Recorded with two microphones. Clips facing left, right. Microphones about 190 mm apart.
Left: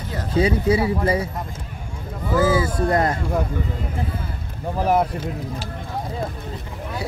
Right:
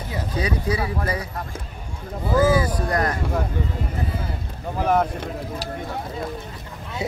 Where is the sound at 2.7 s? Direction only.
25° left (ahead or behind).